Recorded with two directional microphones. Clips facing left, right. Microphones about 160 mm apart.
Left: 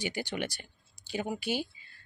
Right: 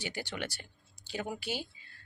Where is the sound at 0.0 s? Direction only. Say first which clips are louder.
Left 4 dB; 15° left (ahead or behind).